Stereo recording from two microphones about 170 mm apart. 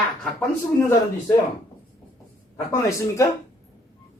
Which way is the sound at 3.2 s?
20° left (ahead or behind).